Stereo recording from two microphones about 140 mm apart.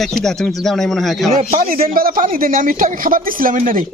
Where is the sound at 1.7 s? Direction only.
90° right.